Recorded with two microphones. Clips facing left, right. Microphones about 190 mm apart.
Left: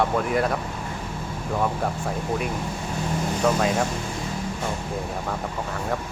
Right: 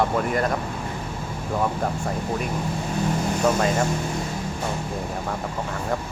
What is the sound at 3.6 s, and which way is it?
Speech, centre (ahead or behind).